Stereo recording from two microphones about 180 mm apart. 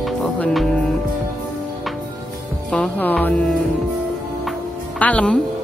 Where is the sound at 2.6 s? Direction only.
5° left (ahead or behind).